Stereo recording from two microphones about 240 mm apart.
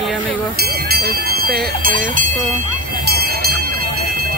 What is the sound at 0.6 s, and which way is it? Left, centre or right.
Speech, right.